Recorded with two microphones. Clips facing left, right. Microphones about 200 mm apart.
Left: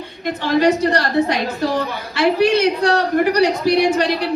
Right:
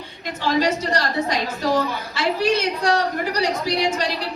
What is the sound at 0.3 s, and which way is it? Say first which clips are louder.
A woman's voice: left 5 dB; 60° left (ahead or behind).